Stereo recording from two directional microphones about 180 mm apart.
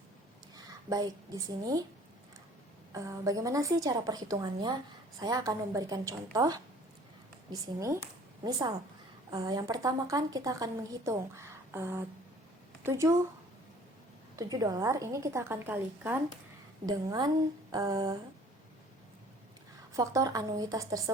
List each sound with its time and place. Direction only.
0.5 s speech: 20° right (ahead or behind)
2.9 s a woman's voice: 20° right (ahead or behind)
14.3 s a woman's voice: 20° right (ahead or behind)
19.9 s a woman's voice: 20° right (ahead or behind)